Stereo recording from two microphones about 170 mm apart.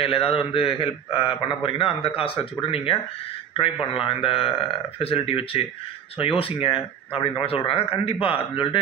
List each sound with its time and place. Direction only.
0.0 s a man's voice: 35° left (ahead or behind)